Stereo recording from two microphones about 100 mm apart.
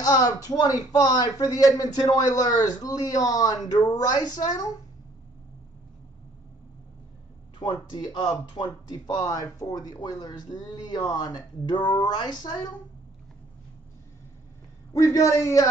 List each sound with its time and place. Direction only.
0.0 s speech: 40° left (ahead or behind)
7.5 s speech: 50° left (ahead or behind)
15.0 s speech: 30° left (ahead or behind)